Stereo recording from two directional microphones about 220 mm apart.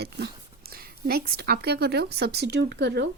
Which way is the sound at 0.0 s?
45° right (ahead or behind).